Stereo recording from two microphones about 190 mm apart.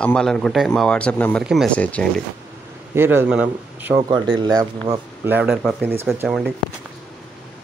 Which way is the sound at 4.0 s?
25° right (ahead or behind).